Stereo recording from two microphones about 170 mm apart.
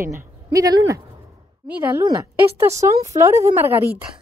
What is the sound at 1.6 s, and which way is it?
Speech, 10° right (ahead or behind).